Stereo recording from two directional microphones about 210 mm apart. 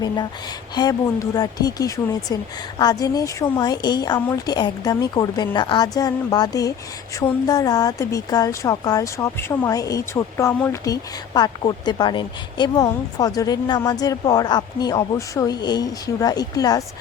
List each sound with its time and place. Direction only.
0.8 s a woman's voice: 15° left (ahead or behind)